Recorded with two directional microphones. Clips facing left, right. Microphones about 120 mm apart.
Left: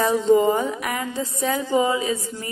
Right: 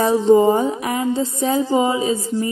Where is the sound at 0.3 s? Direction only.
25° right (ahead or behind).